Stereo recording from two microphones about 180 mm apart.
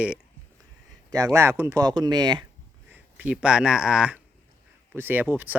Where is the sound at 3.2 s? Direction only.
5° right (ahead or behind).